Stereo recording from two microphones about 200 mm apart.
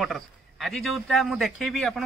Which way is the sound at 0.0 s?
Centre (ahead or behind).